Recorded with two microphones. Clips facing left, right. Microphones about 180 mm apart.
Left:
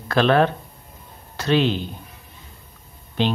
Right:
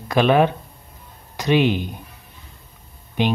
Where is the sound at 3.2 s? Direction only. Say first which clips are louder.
Right 1 dB; 15° right (ahead or behind).